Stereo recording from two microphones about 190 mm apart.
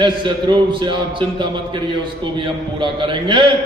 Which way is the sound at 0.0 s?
25° right (ahead or behind).